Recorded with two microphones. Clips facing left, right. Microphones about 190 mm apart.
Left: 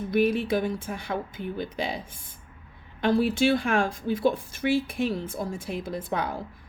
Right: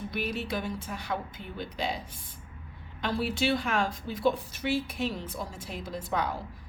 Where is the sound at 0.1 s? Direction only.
50° left (ahead or behind).